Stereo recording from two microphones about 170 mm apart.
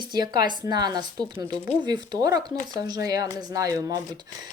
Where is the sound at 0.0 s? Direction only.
25° right (ahead or behind).